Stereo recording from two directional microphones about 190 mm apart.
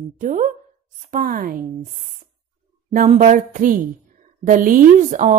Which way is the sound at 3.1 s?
40° right (ahead or behind).